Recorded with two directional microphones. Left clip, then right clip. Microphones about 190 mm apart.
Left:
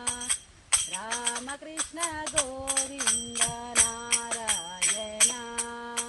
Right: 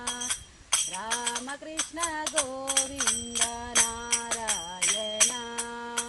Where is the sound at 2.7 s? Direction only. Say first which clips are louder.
Right 6 dB; 25° right (ahead or behind).